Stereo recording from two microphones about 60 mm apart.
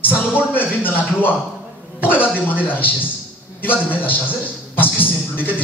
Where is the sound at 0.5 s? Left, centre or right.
Left.